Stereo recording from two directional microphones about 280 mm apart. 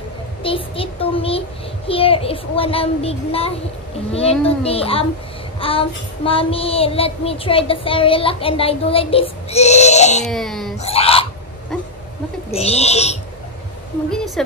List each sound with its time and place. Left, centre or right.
0.4 s child singing: centre
10.2 s speech: centre
10.8 s dog: left
12.4 s child singing: left
14.1 s speech: centre